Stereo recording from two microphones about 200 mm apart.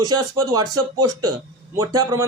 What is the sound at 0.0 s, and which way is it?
A man's voice, 20° right (ahead or behind).